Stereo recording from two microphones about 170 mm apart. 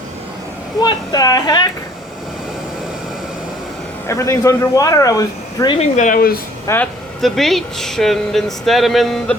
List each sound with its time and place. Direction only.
0.8 s speech: 25° left (ahead or behind)
4.1 s speech: 20° left (ahead or behind)
5.7 s speech: 40° left (ahead or behind); by 6.4 s 60° left (ahead or behind)
6.7 s speech: 15° left (ahead or behind)
7.2 s speech: centre (ahead or behind)